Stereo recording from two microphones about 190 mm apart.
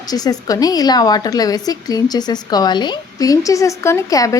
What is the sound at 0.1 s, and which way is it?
A woman's voice, 20° left (ahead or behind).